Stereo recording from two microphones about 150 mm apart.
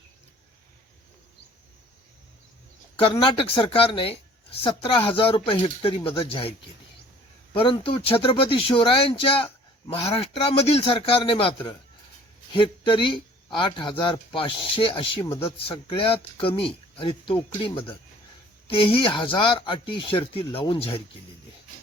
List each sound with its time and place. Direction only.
2.9 s speech: 35° left (ahead or behind)
7.5 s speech: 35° left (ahead or behind)
18.7 s speech: 35° left (ahead or behind)